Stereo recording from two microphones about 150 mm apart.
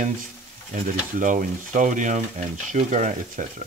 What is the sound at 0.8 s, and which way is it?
Speech, 65° right (ahead or behind).